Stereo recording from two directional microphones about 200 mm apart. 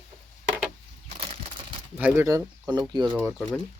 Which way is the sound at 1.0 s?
30° right (ahead or behind).